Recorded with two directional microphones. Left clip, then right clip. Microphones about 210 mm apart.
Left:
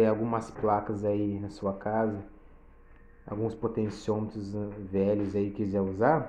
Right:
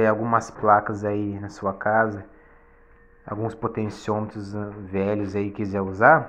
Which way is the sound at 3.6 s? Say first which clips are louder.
Right 4 dB; 15° right (ahead or behind).